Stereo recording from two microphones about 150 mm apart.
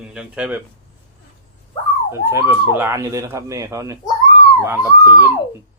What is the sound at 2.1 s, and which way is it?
Speech, 15° right (ahead or behind).